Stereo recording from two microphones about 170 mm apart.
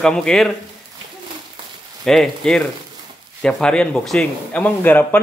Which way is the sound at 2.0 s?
Centre (ahead or behind).